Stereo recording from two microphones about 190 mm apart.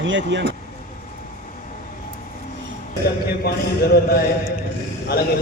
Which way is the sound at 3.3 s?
55° left (ahead or behind).